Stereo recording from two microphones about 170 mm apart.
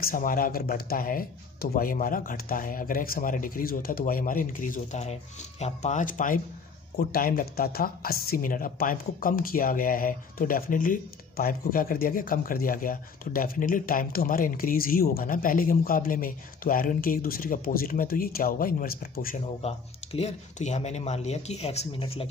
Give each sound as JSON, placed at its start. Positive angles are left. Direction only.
{"t": 0.0, "sound": "speech", "side_deg": 55}
{"t": 7.0, "sound": "speech", "side_deg": 60}
{"t": 19.4, "sound": "speech", "side_deg": 35}